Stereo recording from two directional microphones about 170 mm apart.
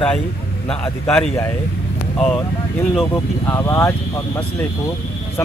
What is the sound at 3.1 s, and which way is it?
Speech, 15° left (ahead or behind).